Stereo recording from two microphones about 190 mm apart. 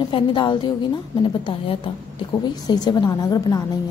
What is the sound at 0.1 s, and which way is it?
A woman's voice, 25° left (ahead or behind).